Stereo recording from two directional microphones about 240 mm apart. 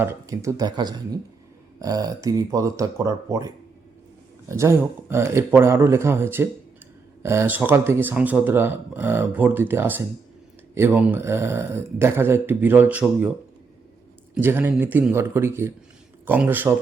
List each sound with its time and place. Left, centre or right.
0.0 s speech: centre
14.4 s speech: centre